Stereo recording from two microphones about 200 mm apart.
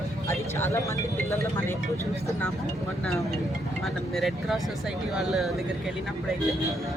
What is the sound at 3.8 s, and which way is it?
Speech, centre (ahead or behind).